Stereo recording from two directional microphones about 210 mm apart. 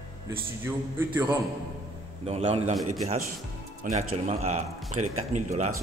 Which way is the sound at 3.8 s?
40° right (ahead or behind).